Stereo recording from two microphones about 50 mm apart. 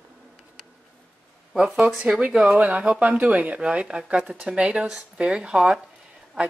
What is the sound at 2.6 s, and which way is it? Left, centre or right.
A woman's voice, right.